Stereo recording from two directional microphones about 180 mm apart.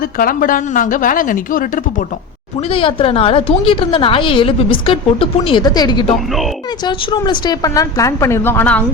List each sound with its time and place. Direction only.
0.0 s speech: 50° left (ahead or behind)
2.6 s a woman's voice: 30° left (ahead or behind); by 8.8 s 10° left (ahead or behind)